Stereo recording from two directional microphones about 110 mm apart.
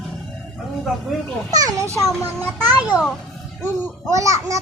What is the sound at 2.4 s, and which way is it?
Speech, 15° right (ahead or behind).